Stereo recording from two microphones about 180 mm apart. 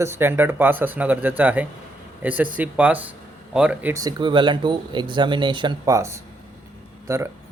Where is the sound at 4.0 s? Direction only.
25° right (ahead or behind).